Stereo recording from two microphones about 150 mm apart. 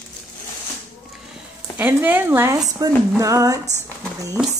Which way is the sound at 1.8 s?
15° right (ahead or behind).